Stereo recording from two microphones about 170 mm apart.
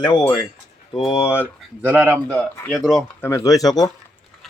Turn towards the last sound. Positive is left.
turn(degrees=20)  # may be behind; listen again after turning